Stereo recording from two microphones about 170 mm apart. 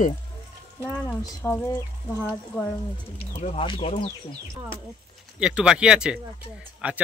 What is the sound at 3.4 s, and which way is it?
Speech, 35° left (ahead or behind).